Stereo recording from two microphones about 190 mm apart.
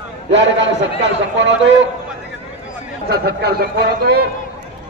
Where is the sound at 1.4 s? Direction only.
70° right (ahead or behind).